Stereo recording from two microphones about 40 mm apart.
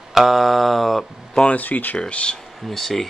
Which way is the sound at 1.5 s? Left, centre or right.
Left.